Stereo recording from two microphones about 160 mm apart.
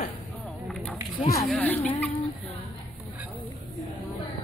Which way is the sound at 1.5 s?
10° left (ahead or behind).